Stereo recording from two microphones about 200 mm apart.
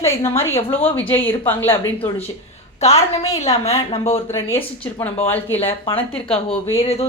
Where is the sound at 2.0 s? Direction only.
25° left (ahead or behind).